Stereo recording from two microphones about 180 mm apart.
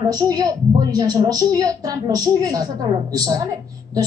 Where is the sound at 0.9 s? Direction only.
20° right (ahead or behind).